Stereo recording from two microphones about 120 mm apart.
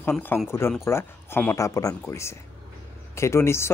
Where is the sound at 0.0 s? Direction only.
15° left (ahead or behind).